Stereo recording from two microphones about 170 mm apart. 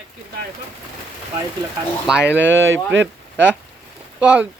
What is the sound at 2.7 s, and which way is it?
Speech, 90° right.